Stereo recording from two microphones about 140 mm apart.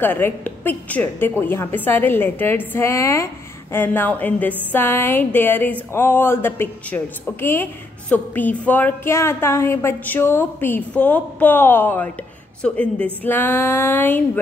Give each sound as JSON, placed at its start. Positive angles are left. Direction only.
{"t": 0.0, "sound": "a woman's voice", "side_deg": 15}